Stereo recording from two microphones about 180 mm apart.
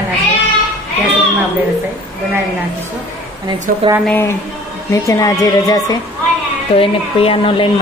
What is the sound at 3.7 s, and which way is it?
Speech, 50° right (ahead or behind).